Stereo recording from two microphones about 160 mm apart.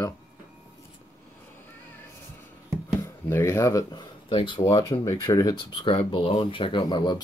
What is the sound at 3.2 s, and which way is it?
Speech, 15° left (ahead or behind).